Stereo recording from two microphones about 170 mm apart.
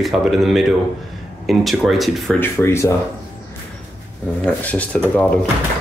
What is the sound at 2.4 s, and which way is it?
Speech, 15° left (ahead or behind).